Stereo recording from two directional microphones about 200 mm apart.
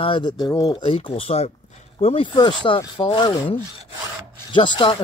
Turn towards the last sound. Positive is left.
turn(degrees=25)  # may be behind; listen again after turning